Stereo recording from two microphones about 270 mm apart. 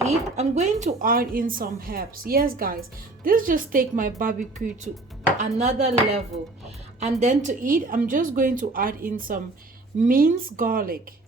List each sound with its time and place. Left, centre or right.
0.0 s a woman's voice: right
4.9 s chopping: right
7.0 s a woman's voice: right